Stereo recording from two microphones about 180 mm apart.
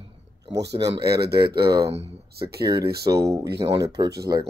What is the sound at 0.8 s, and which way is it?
Speech, 20° right (ahead or behind).